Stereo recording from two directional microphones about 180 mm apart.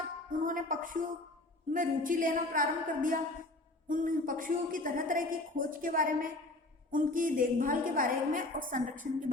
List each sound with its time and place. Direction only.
0.3 s a woman's voice: 50° right (ahead or behind)